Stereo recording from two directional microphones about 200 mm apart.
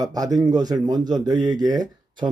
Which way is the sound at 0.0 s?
20° right (ahead or behind).